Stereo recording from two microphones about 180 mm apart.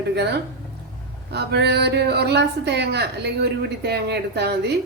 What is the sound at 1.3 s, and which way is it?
A woman's voice, 65° right (ahead or behind).